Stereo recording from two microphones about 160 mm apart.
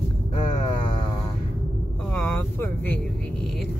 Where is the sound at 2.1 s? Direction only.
15° left (ahead or behind).